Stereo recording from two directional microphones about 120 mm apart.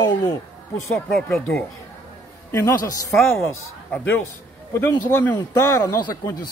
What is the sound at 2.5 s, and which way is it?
A man's voice, 25° left (ahead or behind).